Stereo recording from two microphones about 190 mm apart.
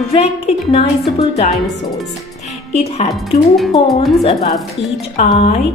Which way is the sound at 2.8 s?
35° left (ahead or behind).